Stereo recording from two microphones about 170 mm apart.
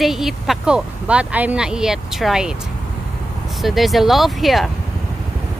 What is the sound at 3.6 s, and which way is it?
Speech, centre (ahead or behind).